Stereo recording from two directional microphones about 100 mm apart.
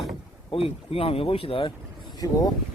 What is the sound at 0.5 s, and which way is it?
Speech, 70° left (ahead or behind).